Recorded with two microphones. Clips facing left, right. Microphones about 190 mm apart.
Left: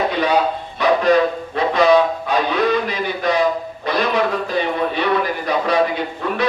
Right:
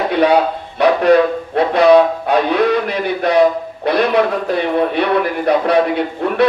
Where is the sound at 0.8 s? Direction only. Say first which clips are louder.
Right 4 dB; 65° right (ahead or behind).